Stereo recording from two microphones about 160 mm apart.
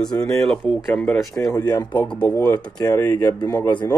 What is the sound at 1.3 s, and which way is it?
Speech, 20° left (ahead or behind).